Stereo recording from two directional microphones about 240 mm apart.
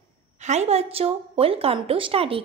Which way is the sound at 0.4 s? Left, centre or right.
Right.